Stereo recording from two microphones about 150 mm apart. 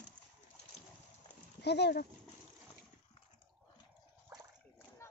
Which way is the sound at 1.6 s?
90° left.